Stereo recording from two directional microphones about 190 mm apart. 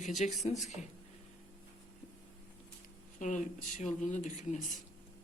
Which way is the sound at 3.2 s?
40° left (ahead or behind).